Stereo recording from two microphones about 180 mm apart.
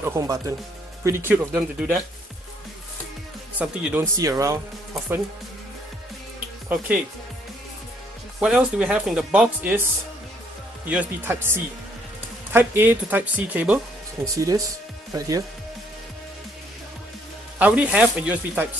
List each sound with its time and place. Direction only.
0.0 s speech: 15° right (ahead or behind)
3.5 s speech: 15° right (ahead or behind)
8.4 s speech: 5° right (ahead or behind)
10.9 s speech: 10° right (ahead or behind)
14.2 s speech: 20° right (ahead or behind)
17.6 s speech: 10° right (ahead or behind)